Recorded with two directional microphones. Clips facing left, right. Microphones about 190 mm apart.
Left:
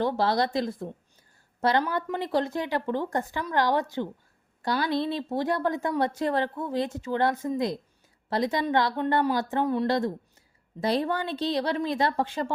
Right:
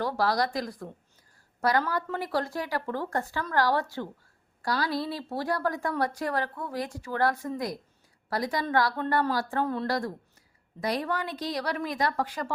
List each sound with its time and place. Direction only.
0.0 s a woman's voice: 25° left (ahead or behind)